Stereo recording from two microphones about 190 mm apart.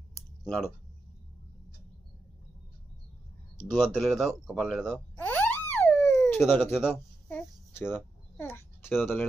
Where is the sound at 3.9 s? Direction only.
Centre (ahead or behind).